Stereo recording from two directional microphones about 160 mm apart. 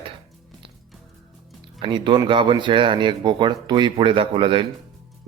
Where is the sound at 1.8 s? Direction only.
30° right (ahead or behind).